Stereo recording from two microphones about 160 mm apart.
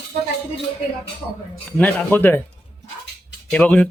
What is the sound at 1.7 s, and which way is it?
Speech, 10° left (ahead or behind).